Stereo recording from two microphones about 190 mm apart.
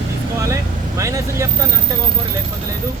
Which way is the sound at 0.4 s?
15° right (ahead or behind).